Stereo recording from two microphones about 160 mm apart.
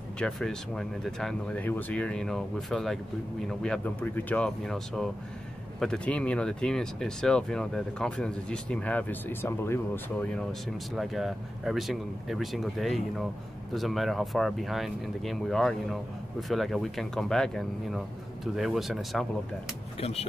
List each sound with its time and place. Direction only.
0.2 s speech: 5° left (ahead or behind)
11.0 s speech: centre (ahead or behind)
20.0 s speech: 40° left (ahead or behind)